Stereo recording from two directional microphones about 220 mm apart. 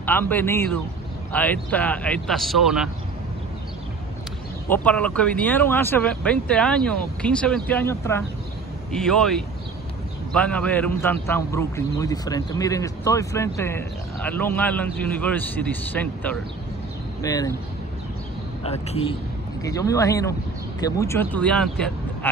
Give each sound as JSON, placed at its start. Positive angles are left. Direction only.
{"t": 0.0, "sound": "speech", "side_deg": 10}
{"t": 4.6, "sound": "speech", "side_deg": 10}
{"t": 18.6, "sound": "a man's voice", "side_deg": 25}
{"t": 19.6, "sound": "speech", "side_deg": 15}